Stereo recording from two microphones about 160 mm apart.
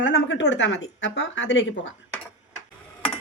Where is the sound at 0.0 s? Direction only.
90° left.